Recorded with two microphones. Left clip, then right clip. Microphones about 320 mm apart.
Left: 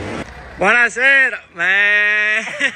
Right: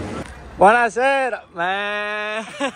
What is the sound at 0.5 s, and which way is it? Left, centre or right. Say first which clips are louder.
Speech: even; centre.